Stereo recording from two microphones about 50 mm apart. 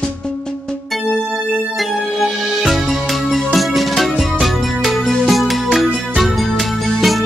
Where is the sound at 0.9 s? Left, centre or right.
Centre.